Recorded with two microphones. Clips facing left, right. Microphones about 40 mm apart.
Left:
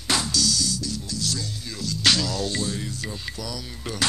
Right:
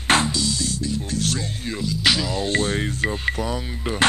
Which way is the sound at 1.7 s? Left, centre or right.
Centre.